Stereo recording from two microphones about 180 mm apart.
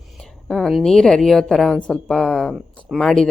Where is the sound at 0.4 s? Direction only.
Centre (ahead or behind).